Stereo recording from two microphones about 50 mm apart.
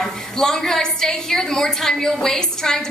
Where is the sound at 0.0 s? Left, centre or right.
Centre.